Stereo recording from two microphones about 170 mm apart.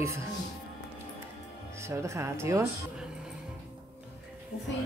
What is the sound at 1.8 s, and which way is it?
Speech, 15° right (ahead or behind).